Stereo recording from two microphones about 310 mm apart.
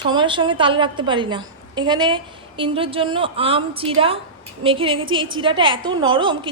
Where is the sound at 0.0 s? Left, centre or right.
Centre.